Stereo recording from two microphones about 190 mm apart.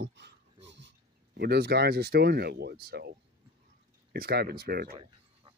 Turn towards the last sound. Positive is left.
turn(degrees=-55)  # may be behind; listen again after turning